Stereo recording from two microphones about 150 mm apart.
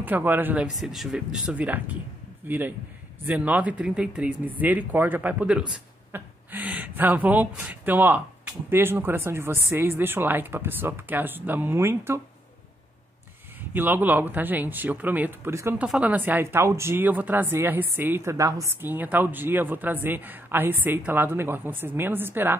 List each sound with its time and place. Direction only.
0.0 s speech: 15° right (ahead or behind)
0.7 s a man's voice: centre (ahead or behind)
13.6 s speech: 15° right (ahead or behind)